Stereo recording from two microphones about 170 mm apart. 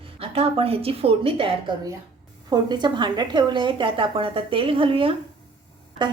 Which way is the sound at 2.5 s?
25° right (ahead or behind).